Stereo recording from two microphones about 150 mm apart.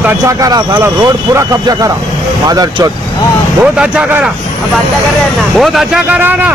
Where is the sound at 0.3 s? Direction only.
25° right (ahead or behind).